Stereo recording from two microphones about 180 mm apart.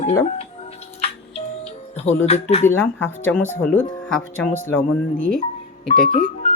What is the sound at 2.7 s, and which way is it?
Speech, 10° left (ahead or behind).